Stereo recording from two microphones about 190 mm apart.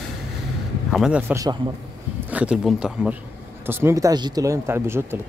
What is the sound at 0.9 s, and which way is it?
Speech, centre (ahead or behind).